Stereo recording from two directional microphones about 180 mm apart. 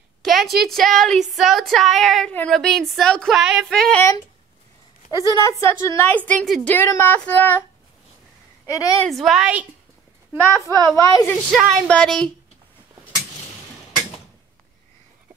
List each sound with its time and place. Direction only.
0.2 s a woman's voice: centre (ahead or behind)
5.1 s a woman's voice: 20° left (ahead or behind)
9.0 s a woman's voice: centre (ahead or behind)
10.3 s speech: 15° right (ahead or behind)
10.9 s a woman's voice: 15° left (ahead or behind)
11.5 s a woman's voice: 5° left (ahead or behind)